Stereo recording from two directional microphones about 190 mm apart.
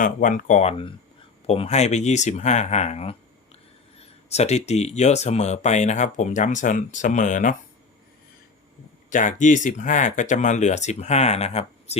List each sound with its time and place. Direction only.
0.0 s speech: 45° left (ahead or behind)
9.0 s speech: 45° left (ahead or behind)